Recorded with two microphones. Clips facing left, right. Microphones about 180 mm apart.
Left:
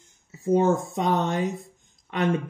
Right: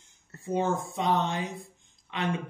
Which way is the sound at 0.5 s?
45° left (ahead or behind).